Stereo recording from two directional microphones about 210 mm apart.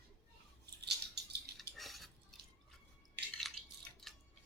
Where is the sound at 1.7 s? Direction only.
Centre (ahead or behind).